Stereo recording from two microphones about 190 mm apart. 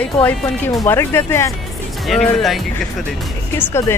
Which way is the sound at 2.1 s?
Centre (ahead or behind).